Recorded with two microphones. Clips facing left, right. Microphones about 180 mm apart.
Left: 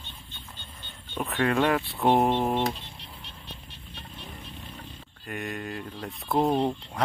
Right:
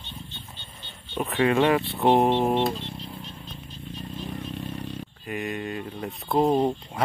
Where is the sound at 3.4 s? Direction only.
65° left (ahead or behind).